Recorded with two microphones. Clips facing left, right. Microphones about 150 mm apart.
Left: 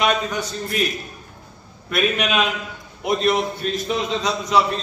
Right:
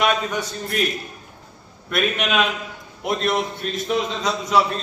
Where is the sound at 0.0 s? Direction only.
Centre (ahead or behind).